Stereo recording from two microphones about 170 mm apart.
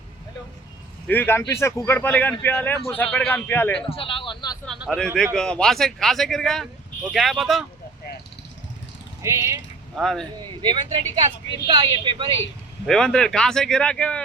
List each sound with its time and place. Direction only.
1.0 s speech: 10° left (ahead or behind)
3.8 s a sound: 30° left (ahead or behind)
4.9 s a man's voice: 5° left (ahead or behind)
9.2 s speech: 15° right (ahead or behind)
9.9 s a man's voice: centre (ahead or behind)
10.3 s a woman's voice: 25° right (ahead or behind)
12.8 s a man's voice: 5° left (ahead or behind)